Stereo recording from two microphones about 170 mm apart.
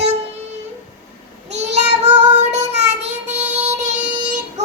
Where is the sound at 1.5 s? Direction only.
90° right.